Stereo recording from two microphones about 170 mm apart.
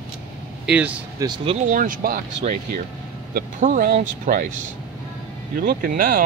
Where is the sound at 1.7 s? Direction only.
55° right (ahead or behind).